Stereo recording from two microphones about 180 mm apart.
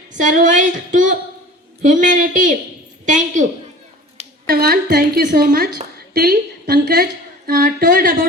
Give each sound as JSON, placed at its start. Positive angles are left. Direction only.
{"t": 0.1, "sound": "speech", "side_deg": -45}
{"t": 4.4, "sound": "a woman's voice", "side_deg": -55}